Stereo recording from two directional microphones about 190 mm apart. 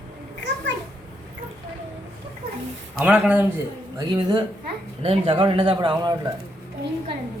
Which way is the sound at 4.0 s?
20° right (ahead or behind).